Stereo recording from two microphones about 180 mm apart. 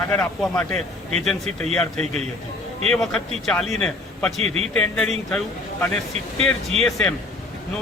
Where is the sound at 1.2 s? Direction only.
Centre (ahead or behind).